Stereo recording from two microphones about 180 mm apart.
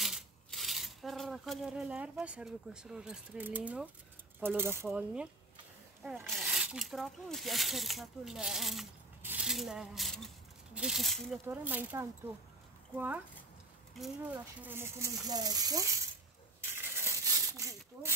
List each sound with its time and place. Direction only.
0.0 s speech: centre (ahead or behind)
11.4 s speech: 10° right (ahead or behind)
14.3 s speech: 10° right (ahead or behind)
16.7 s a sound: 15° right (ahead or behind)